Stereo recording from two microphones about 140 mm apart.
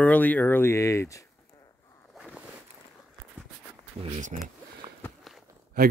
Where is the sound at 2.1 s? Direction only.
5° right (ahead or behind).